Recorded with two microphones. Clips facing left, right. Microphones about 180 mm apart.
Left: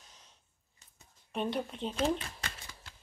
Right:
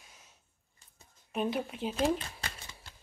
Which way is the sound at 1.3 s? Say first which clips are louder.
Right 2 dB; 5° right (ahead or behind).